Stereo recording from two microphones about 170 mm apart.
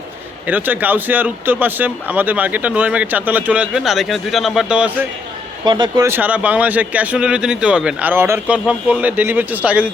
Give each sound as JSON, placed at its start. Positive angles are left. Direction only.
{"t": 0.4, "sound": "speech", "side_deg": -10}
{"t": 5.6, "sound": "speech", "side_deg": -25}
{"t": 6.1, "sound": "speech", "side_deg": -10}